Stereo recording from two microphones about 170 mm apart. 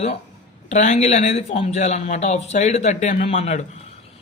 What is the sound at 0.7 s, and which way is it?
Speech, 45° left (ahead or behind).